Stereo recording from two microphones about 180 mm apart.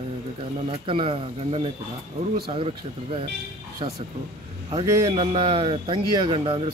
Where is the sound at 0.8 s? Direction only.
30° right (ahead or behind).